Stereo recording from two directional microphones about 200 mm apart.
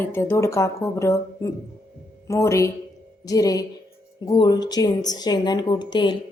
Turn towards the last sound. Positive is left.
turn(degrees=20)  # may be behind; listen again after turning